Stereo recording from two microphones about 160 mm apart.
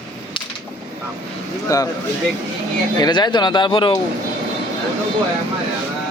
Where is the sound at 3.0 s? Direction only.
25° left (ahead or behind).